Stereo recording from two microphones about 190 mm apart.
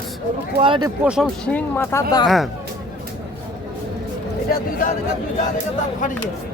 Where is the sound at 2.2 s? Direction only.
Centre (ahead or behind).